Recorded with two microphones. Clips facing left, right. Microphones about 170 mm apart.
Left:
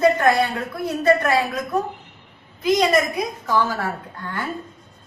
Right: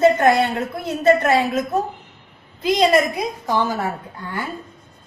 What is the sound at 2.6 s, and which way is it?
A woman's voice, 30° right (ahead or behind).